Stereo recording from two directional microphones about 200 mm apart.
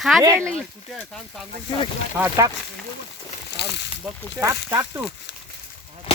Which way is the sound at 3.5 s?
55° left (ahead or behind).